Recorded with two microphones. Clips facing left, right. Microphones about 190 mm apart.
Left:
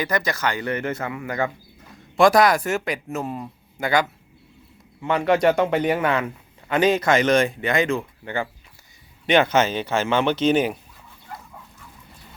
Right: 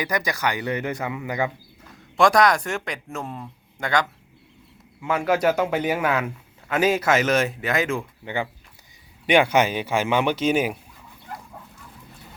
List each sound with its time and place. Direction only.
0.0 s speech: 15° right (ahead or behind)
2.1 s a man's voice: 5° left (ahead or behind)
5.0 s a man's voice: 5° right (ahead or behind)